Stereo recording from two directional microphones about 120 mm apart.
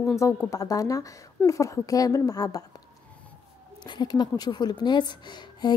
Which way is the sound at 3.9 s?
35° left (ahead or behind).